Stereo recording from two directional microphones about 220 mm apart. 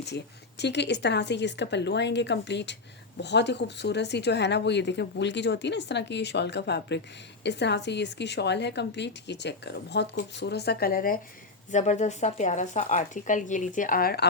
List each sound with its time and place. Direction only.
0.6 s speech: 50° left (ahead or behind)